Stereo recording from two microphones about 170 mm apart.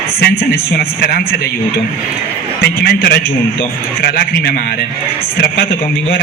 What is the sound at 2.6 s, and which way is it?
A man's voice, 65° left (ahead or behind).